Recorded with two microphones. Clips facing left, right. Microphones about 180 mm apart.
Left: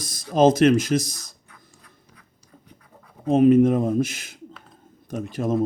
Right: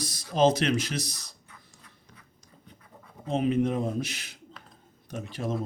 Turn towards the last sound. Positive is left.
turn(degrees=45)  # may be behind; listen again after turning